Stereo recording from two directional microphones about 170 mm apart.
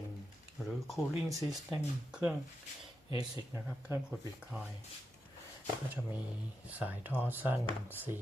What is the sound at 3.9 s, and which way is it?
Speech, 5° right (ahead or behind).